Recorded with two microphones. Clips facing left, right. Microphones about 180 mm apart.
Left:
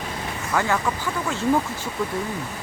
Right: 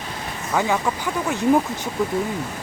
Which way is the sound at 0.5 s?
15° right (ahead or behind).